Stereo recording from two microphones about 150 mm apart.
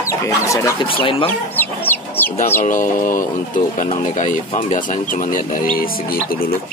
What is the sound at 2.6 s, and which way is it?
Speech, 60° left (ahead or behind).